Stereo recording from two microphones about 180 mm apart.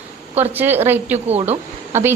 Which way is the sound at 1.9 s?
15° right (ahead or behind).